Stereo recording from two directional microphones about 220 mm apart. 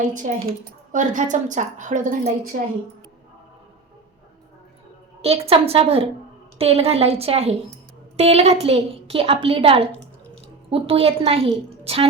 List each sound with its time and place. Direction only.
0.0 s a woman's voice: 35° right (ahead or behind)
5.2 s a woman's voice: 25° right (ahead or behind)